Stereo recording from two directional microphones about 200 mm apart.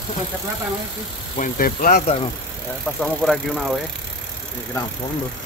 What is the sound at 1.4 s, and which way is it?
Speech, 45° left (ahead or behind).